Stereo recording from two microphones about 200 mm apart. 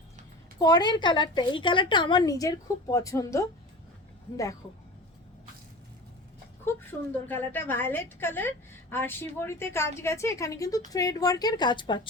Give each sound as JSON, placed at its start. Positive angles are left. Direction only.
{"t": 0.6, "sound": "a woman's voice", "side_deg": 20}
{"t": 7.3, "sound": "a woman's voice", "side_deg": 10}